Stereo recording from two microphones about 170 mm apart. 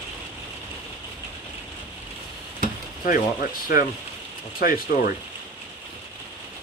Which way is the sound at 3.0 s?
55° left (ahead or behind).